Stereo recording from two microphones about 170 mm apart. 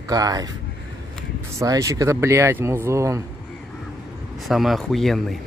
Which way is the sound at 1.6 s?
20° right (ahead or behind).